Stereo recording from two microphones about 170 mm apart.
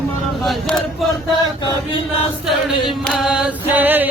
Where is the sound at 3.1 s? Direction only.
5° right (ahead or behind).